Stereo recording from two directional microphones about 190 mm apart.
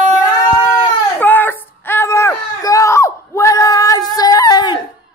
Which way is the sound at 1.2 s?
10° left (ahead or behind).